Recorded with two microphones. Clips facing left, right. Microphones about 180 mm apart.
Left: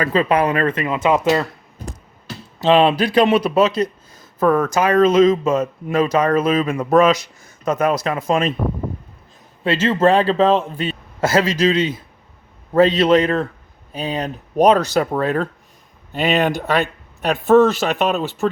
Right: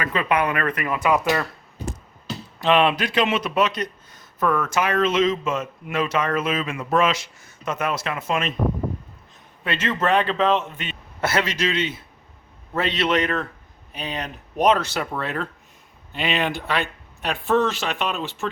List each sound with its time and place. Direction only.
0.0 s speech: 35° left (ahead or behind)
2.6 s speech: 30° left (ahead or behind)
9.6 s speech: 30° left (ahead or behind)